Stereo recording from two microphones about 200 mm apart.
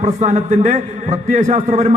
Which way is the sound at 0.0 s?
35° right (ahead or behind).